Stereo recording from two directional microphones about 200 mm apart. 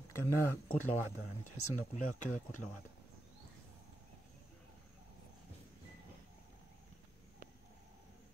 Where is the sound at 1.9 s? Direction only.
40° left (ahead or behind).